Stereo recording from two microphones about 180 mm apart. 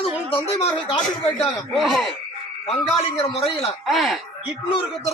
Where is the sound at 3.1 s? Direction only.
35° left (ahead or behind).